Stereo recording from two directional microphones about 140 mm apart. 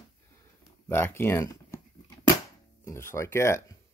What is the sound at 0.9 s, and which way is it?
Speech, 15° left (ahead or behind).